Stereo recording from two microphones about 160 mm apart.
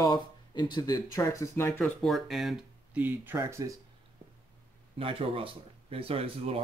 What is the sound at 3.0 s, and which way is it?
Speech, 10° right (ahead or behind).